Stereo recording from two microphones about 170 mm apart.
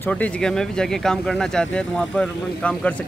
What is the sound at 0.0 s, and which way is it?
Speech, 5° left (ahead or behind).